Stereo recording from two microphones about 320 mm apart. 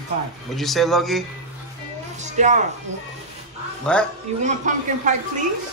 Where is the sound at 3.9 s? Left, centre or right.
Centre.